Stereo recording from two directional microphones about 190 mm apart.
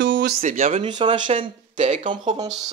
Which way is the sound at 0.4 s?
40° right (ahead or behind).